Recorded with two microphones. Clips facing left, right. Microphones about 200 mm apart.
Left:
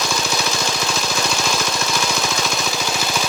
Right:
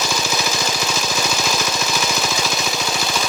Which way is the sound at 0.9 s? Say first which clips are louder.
Even; 5° right (ahead or behind).